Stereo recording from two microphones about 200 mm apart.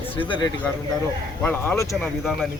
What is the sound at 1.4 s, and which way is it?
Speech, 10° left (ahead or behind).